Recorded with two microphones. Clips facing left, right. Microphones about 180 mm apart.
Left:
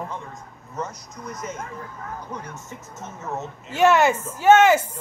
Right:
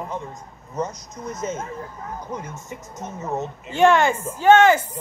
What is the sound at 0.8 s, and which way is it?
Speech, 20° right (ahead or behind).